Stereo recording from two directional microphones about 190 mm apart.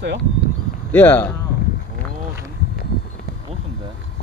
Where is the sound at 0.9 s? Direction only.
10° left (ahead or behind).